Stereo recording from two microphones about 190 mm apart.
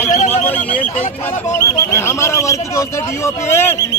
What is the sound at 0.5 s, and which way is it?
Neigh, 5° left (ahead or behind).